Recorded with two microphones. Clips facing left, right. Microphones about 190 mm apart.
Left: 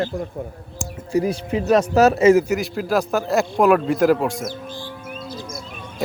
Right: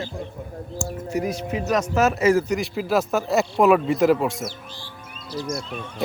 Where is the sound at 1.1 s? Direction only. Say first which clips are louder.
Left 6 dB; 30° left (ahead or behind).